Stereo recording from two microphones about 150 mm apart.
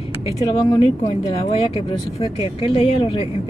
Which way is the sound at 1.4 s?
40° left (ahead or behind).